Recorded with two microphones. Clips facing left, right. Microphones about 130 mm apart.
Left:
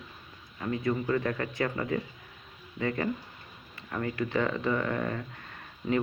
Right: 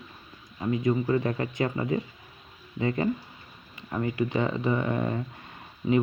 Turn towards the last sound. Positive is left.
turn(degrees=-10)  # may be behind; listen again after turning